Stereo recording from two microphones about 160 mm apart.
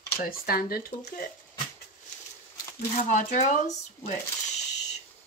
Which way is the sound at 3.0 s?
55° left (ahead or behind).